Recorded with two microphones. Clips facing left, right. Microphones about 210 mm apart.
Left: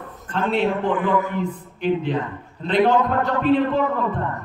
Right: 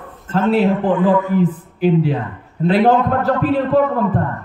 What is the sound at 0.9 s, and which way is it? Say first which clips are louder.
Speech: right 6 dB; 25° right (ahead or behind).